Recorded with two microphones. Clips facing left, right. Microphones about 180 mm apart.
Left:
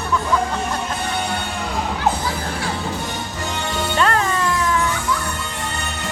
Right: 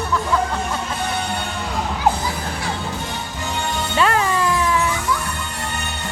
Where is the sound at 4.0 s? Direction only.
10° right (ahead or behind).